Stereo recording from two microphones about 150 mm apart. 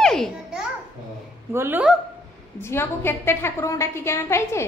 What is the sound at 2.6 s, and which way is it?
A woman's voice, 15° left (ahead or behind).